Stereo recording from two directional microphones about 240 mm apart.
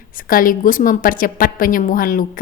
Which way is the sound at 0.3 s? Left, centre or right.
Left.